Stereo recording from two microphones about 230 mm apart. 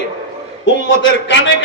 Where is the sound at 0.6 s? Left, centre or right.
Left.